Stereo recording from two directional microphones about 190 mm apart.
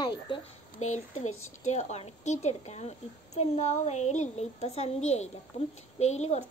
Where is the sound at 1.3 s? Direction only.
90° left.